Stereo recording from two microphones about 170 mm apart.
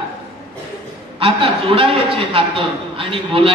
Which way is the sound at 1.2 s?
30° right (ahead or behind).